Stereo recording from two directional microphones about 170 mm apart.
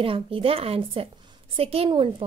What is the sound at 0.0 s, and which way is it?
A woman's voice, 30° right (ahead or behind).